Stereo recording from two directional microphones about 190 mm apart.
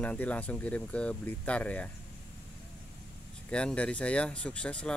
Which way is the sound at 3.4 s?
5° left (ahead or behind).